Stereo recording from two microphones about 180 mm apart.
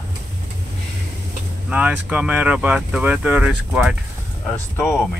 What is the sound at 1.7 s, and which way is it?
Speech, 10° right (ahead or behind).